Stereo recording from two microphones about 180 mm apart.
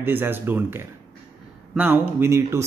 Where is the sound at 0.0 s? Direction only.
10° right (ahead or behind).